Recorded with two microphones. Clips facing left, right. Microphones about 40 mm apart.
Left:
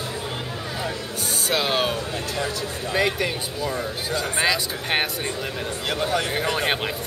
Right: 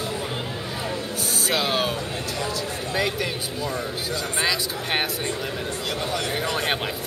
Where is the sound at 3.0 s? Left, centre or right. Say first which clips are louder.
Left 3 dB; centre.